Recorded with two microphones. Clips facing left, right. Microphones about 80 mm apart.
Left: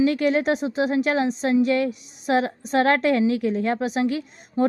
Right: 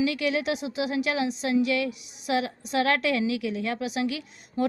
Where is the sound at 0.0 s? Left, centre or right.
Left.